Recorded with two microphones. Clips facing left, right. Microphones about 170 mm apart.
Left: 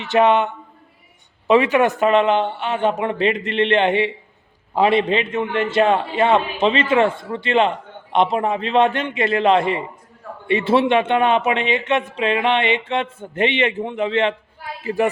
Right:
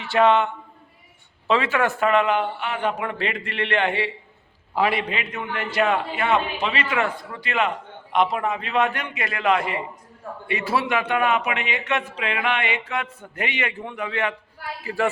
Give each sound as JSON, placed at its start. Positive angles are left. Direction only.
{"t": 0.0, "sound": "a man's voice", "side_deg": 20}